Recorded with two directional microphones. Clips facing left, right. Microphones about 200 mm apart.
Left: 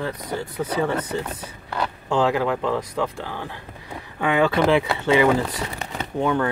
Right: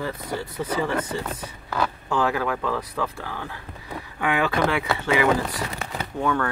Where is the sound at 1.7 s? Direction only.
30° left (ahead or behind).